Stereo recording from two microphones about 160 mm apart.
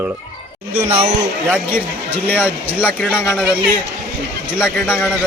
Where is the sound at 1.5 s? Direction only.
10° right (ahead or behind).